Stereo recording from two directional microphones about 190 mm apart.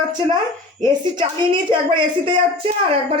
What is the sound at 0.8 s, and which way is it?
A woman's voice, 25° right (ahead or behind).